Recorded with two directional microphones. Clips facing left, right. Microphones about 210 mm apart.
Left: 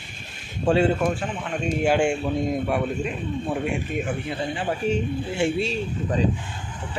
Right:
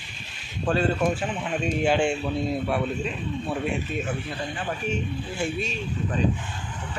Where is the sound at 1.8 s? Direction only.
10° left (ahead or behind).